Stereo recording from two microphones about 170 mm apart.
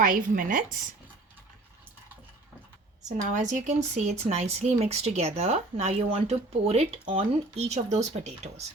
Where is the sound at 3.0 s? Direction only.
45° right (ahead or behind).